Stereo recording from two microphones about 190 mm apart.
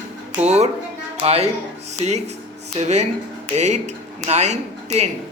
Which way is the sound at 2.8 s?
35° right (ahead or behind).